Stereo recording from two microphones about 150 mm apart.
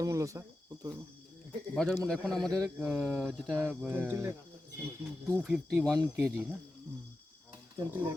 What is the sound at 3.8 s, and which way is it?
Speech, 15° right (ahead or behind).